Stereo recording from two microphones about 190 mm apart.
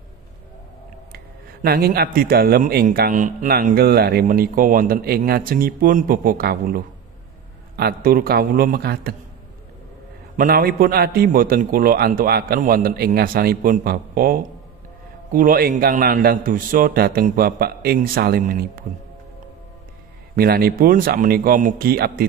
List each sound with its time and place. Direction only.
1.1 s speech: 55° right (ahead or behind)
10.3 s speech: 50° right (ahead or behind)
20.3 s speech: 55° right (ahead or behind)